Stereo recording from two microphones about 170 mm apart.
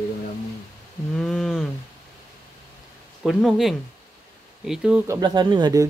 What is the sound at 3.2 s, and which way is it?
Speech, centre (ahead or behind).